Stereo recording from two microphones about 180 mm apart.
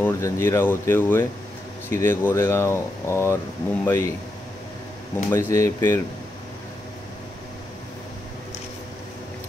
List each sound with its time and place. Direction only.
0.0 s speech: 15° left (ahead or behind)
5.3 s speech: 15° left (ahead or behind)